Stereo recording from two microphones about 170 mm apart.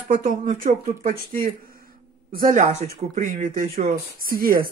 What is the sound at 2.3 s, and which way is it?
Speech, 50° right (ahead or behind).